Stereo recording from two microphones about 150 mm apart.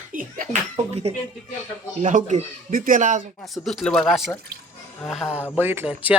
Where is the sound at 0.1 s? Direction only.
60° right (ahead or behind).